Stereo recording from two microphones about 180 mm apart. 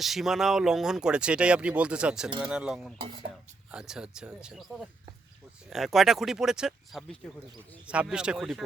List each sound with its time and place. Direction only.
0.0 s speech: centre (ahead or behind)